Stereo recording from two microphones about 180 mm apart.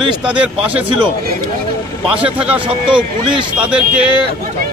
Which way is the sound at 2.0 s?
5° right (ahead or behind).